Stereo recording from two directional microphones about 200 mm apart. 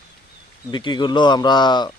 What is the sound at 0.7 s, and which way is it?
Speech, 25° left (ahead or behind).